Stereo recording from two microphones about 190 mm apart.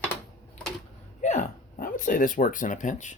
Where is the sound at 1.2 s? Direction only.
40° left (ahead or behind).